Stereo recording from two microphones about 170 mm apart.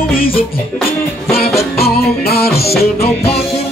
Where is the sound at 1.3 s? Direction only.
65° left (ahead or behind).